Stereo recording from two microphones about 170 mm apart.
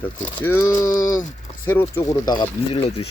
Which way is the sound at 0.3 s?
15° left (ahead or behind).